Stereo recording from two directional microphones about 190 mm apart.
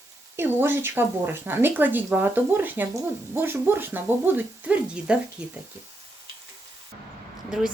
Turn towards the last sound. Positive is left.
turn(degrees=-5)  # may be behind; listen again after turning